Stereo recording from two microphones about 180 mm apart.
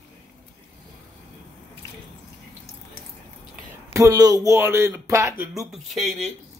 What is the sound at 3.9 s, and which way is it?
Speech, 20° right (ahead or behind).